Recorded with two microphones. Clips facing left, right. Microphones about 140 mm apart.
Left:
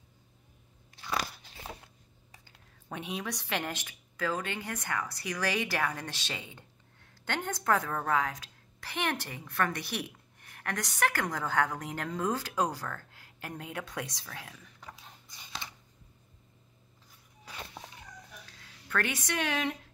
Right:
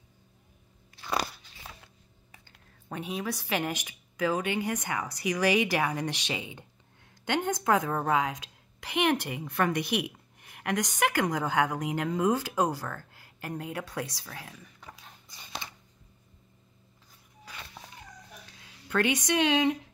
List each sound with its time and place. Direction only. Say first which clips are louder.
1.6 s a sound: left 4 dB; 20° left (ahead or behind)
2.9 s a woman's voice: right 3 dB; centre (ahead or behind)
17.5 s vehicle: left 2 dB; 25° left (ahead or behind)
18.6 s speech: right 5 dB; 20° right (ahead or behind)